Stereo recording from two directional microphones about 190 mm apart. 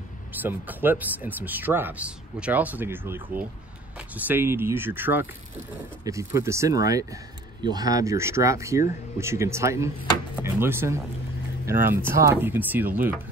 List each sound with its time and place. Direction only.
0.4 s speech: 10° right (ahead or behind)